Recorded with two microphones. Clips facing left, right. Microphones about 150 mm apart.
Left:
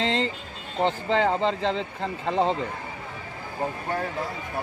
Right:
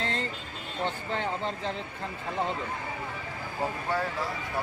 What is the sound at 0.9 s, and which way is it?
Speech, 90° left.